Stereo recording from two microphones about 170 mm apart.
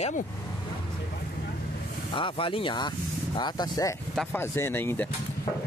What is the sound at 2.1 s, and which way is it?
Speech, 30° left (ahead or behind).